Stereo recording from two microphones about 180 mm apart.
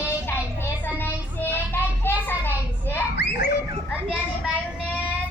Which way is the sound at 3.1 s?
70° left (ahead or behind).